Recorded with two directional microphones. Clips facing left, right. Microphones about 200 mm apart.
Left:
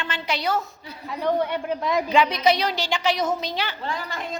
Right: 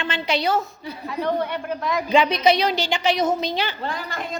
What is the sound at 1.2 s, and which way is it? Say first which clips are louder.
Speech: left 2 dB; 20° left (ahead or behind).